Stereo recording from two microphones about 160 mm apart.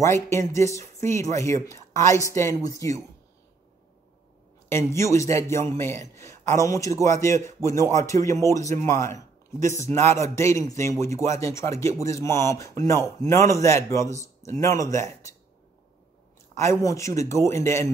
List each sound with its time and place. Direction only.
0.0 s a man's voice: 20° left (ahead or behind)
4.6 s a man's voice: 15° left (ahead or behind)
16.5 s speech: 20° left (ahead or behind)